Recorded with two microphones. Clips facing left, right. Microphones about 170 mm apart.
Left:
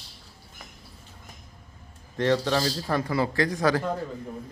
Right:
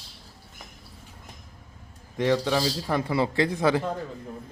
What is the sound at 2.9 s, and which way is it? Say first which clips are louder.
Speech: right 1 dB; 25° right (ahead or behind).